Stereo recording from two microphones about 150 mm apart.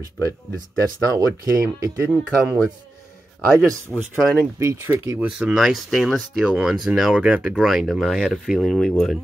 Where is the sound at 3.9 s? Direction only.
10° left (ahead or behind).